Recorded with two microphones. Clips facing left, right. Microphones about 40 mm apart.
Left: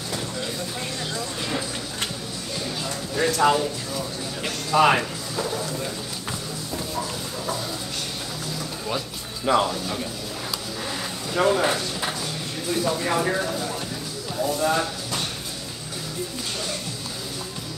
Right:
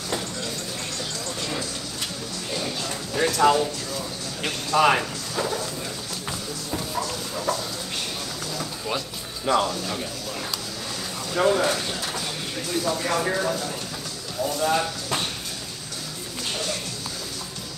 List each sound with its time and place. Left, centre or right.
3.2 s speech: centre
5.3 s a sound: centre
7.0 s a sound: centre
8.5 s music: centre
9.5 s speech: centre
11.3 s speech: centre
11.6 s speech: centre
12.6 s speech: centre